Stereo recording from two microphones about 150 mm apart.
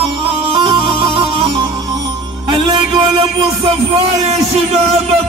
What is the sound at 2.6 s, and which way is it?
Music, 30° right (ahead or behind).